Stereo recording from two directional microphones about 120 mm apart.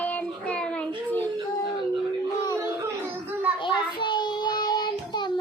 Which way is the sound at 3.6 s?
40° left (ahead or behind).